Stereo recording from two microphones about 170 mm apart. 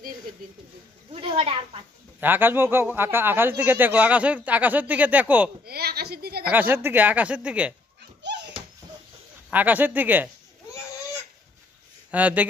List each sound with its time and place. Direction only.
1.1 s snake: 35° right (ahead or behind)
2.1 s speech: 10° right (ahead or behind)
5.7 s a sound: 65° right (ahead or behind)
6.4 s speech: 10° right (ahead or behind)
9.5 s speech: 10° right (ahead or behind)
12.1 s speech: 10° right (ahead or behind)